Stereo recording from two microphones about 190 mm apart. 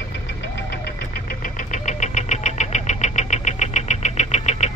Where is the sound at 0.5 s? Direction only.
55° left (ahead or behind); by 4.7 s 35° left (ahead or behind).